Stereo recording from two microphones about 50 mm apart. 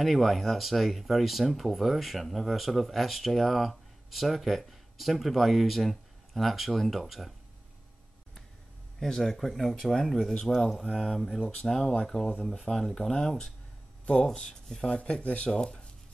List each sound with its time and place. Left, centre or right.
0.0 s speech: centre
9.0 s speech: centre
14.2 s speech: centre
15.0 s speech: left